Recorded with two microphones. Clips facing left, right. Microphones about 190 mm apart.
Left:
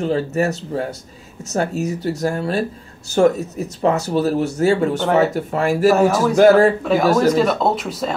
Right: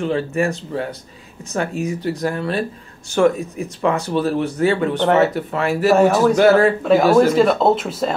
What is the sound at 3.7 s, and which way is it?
Speech, 40° left (ahead or behind).